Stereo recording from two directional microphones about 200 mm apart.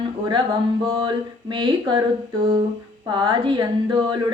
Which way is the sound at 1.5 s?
20° right (ahead or behind).